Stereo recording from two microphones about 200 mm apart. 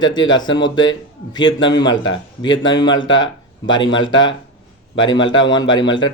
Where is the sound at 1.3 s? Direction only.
20° left (ahead or behind).